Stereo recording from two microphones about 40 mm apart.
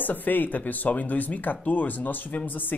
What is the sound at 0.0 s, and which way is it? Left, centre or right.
Speech, left.